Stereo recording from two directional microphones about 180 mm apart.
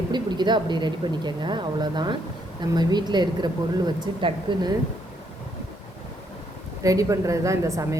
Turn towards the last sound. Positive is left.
turn(degrees=-15)  # may be behind; listen again after turning